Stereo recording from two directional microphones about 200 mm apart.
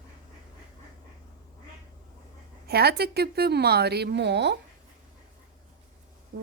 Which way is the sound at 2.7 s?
55° right (ahead or behind).